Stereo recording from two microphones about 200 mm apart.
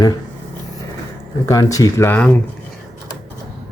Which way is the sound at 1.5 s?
15° left (ahead or behind).